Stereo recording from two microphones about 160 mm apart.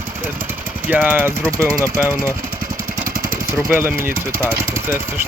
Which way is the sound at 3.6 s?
15° right (ahead or behind).